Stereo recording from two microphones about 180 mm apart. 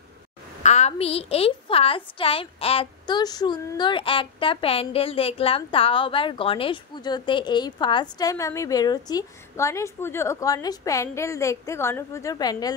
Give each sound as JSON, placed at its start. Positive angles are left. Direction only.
{"t": 0.7, "sound": "a woman's voice", "side_deg": 40}